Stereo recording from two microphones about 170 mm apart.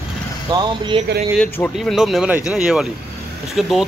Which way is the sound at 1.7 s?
Centre (ahead or behind).